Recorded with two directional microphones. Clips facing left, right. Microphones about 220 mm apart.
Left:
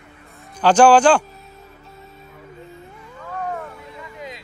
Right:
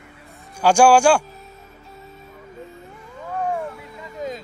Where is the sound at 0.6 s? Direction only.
10° right (ahead or behind).